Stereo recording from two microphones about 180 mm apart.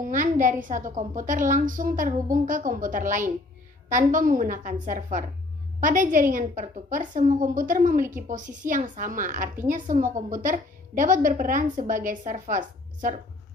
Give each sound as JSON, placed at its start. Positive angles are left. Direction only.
{"t": 0.0, "sound": "a woman's voice", "side_deg": -45}